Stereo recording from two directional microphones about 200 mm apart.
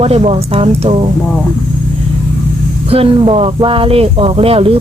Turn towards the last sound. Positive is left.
turn(degrees=-30)  # may be behind; listen again after turning